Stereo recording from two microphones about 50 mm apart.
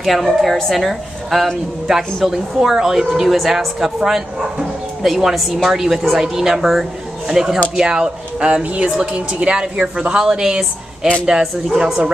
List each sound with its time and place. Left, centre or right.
0.0 s a woman's voice: centre